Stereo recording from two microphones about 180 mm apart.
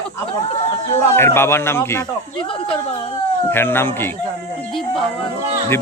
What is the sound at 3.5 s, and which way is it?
Speech, 10° left (ahead or behind).